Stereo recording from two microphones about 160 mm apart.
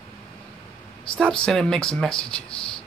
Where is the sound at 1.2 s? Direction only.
5° left (ahead or behind).